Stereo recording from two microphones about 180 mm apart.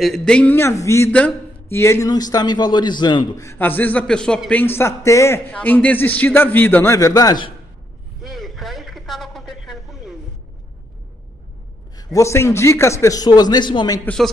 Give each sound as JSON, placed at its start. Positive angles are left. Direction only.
{"t": 0.0, "sound": "a man's voice", "side_deg": 5}
{"t": 8.2, "sound": "a sound", "side_deg": 0}
{"t": 12.0, "sound": "a man's voice", "side_deg": 15}
{"t": 14.0, "sound": "speech", "side_deg": 0}